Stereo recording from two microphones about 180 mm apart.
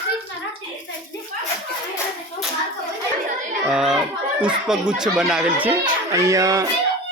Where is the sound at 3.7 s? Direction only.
5° right (ahead or behind).